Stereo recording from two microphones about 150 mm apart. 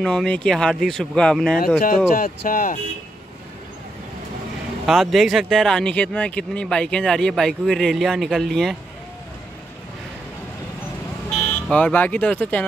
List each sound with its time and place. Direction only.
0.0 s speech: 5° left (ahead or behind)
2.1 s speech: 70° left (ahead or behind)
4.8 s speech: centre (ahead or behind)
11.3 s speech: 5° left (ahead or behind)